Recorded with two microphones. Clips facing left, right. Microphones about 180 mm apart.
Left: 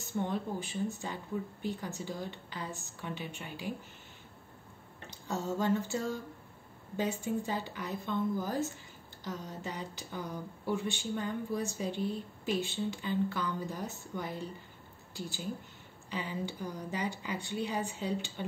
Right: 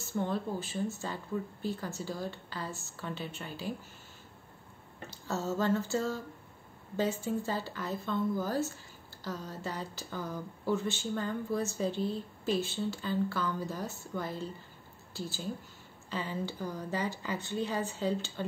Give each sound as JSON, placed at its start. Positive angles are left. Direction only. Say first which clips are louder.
{"t": 0.0, "sound": "speech", "louder": "right 1 dB", "side_deg": 15}
{"t": 5.1, "sound": "speech", "louder": "right 1 dB", "side_deg": 15}